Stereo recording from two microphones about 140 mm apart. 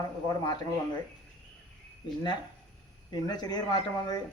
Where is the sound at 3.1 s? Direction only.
30° left (ahead or behind).